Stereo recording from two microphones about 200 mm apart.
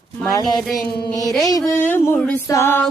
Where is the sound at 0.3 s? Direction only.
20° left (ahead or behind).